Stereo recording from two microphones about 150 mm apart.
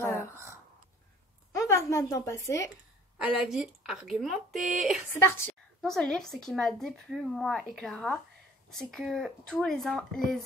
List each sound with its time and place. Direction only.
0.0 s a sound: 15° left (ahead or behind)
1.5 s a woman's voice: 20° left (ahead or behind)
3.2 s speech: 5° right (ahead or behind)
5.1 s a woman's voice: 15° left (ahead or behind)
5.8 s speech: 5° left (ahead or behind)